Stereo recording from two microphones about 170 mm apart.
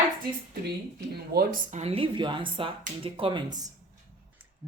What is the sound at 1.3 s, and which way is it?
Speech, 50° right (ahead or behind).